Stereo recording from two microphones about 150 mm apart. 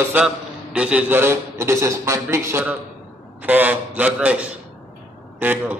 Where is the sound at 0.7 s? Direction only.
5° right (ahead or behind).